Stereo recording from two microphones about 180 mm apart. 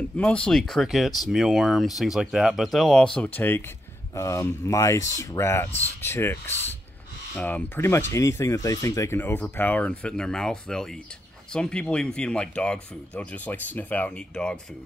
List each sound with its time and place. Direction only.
0.2 s speech: 5° left (ahead or behind)